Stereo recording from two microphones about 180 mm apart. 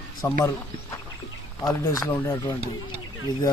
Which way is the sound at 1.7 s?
20° left (ahead or behind).